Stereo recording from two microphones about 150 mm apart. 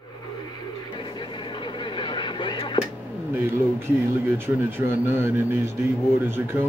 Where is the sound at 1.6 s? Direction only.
30° left (ahead or behind).